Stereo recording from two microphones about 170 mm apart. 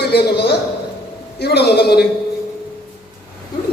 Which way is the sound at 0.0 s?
70° left (ahead or behind).